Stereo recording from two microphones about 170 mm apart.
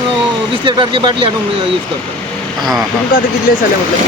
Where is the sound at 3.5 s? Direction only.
60° left (ahead or behind).